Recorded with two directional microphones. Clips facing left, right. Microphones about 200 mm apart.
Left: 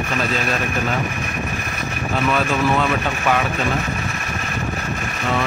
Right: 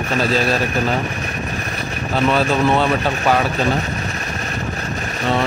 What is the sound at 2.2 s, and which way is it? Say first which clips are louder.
A man's voice: right 3 dB; 30° right (ahead or behind).